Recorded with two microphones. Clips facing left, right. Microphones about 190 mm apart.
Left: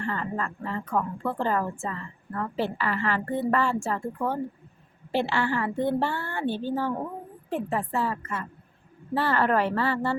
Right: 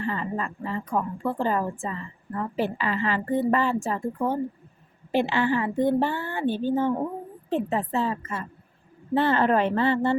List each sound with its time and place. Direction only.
0.0 s a woman's voice: 15° right (ahead or behind)